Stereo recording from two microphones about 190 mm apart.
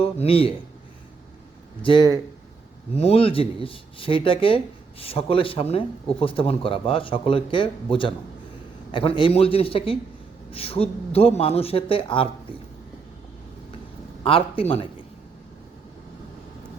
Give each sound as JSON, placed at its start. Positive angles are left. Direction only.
{"t": 0.0, "sound": "speech", "side_deg": 30}
{"t": 1.8, "sound": "a man's voice", "side_deg": 25}
{"t": 14.3, "sound": "speech", "side_deg": 30}